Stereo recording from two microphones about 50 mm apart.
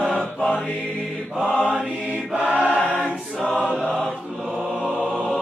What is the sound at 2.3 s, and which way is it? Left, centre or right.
Choir, right.